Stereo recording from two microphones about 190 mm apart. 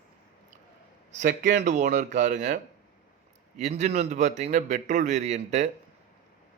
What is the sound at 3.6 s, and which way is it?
A man's voice, 35° right (ahead or behind).